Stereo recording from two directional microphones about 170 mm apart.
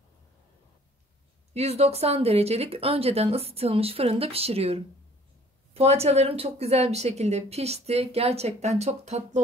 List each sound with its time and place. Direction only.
1.5 s a woman's voice: 35° right (ahead or behind)